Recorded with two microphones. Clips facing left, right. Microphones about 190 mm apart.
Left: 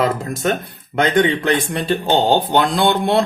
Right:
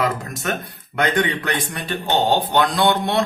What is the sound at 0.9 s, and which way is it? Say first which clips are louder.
Speech: left 5 dB; 25° left (ahead or behind).